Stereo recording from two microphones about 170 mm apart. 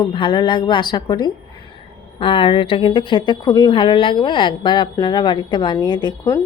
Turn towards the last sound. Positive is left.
turn(degrees=25)  # may be behind; listen again after turning